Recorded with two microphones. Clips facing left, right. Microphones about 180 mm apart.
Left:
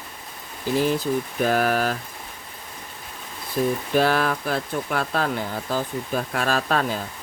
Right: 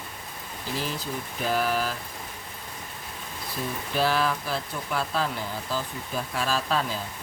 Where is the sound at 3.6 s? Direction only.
55° left (ahead or behind).